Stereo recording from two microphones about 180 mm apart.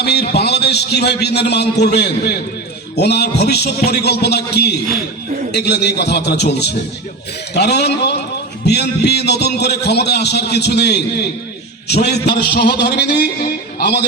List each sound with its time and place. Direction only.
0.0 s a man's voice: 65° left (ahead or behind)